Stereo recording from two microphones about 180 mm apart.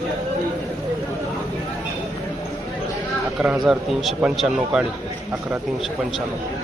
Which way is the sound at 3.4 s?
Centre (ahead or behind).